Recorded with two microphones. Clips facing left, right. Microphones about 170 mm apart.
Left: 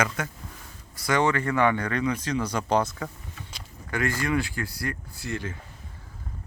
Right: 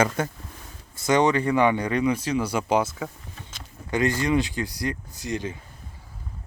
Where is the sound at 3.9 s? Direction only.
20° right (ahead or behind).